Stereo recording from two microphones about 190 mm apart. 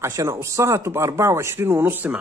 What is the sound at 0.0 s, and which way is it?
Speech, 15° right (ahead or behind).